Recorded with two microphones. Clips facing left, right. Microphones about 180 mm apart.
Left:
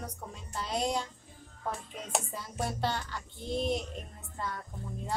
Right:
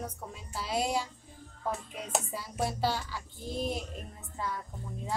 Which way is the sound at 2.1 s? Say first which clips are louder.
Right 1 dB; 5° right (ahead or behind).